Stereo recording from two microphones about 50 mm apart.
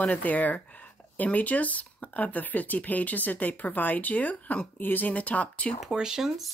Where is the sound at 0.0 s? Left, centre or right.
Left.